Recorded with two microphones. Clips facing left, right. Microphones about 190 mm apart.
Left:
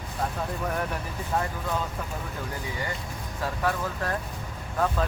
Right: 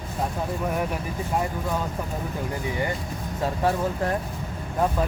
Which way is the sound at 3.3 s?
25° right (ahead or behind).